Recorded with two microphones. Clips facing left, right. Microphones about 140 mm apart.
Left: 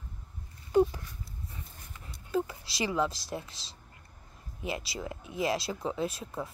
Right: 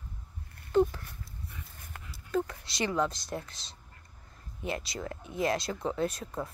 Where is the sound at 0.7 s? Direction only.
10° left (ahead or behind).